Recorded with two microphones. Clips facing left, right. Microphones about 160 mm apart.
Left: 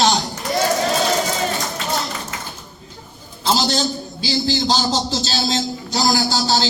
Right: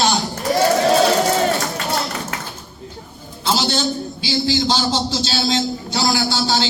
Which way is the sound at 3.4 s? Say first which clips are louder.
Even; 40° left (ahead or behind).